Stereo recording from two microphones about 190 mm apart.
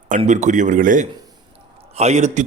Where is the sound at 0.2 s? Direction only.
40° right (ahead or behind).